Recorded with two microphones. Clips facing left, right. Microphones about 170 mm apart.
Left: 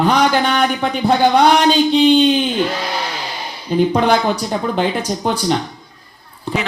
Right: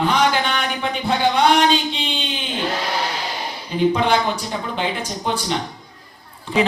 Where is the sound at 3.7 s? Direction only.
40° left (ahead or behind).